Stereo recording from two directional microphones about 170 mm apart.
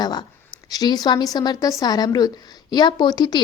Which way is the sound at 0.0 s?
25° left (ahead or behind).